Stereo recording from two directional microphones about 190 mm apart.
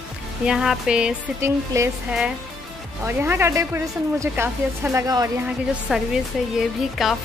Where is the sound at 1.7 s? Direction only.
15° right (ahead or behind).